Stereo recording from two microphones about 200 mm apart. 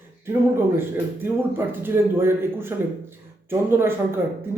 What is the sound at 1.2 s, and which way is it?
A man's voice, 10° right (ahead or behind).